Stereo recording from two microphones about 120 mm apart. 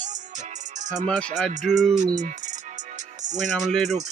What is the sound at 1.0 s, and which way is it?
Music, 10° left (ahead or behind).